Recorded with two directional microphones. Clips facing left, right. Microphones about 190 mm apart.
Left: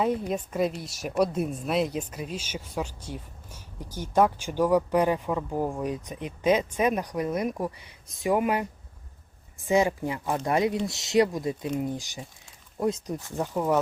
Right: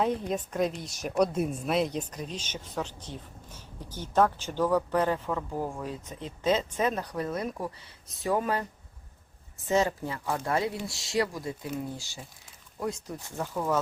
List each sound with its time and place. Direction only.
0.0 s speech: 5° left (ahead or behind)
9.6 s speech: 15° left (ahead or behind)